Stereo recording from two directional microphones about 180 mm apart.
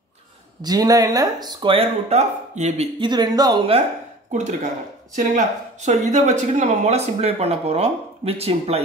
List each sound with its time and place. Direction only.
0.6 s speech: 20° right (ahead or behind); by 2.9 s 40° right (ahead or behind)
3.0 s speech: 25° right (ahead or behind)
5.1 s speech: 45° right (ahead or behind)